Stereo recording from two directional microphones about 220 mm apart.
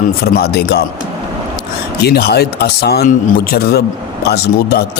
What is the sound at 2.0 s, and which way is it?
Speech, 45° left (ahead or behind).